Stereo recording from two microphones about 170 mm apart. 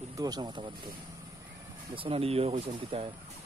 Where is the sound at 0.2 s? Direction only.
25° right (ahead or behind).